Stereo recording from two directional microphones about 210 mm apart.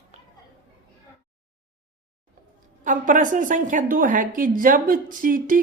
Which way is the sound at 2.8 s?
40° right (ahead or behind).